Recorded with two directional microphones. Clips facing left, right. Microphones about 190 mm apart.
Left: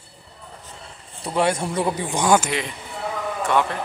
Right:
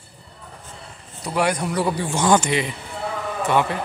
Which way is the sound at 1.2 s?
25° left (ahead or behind).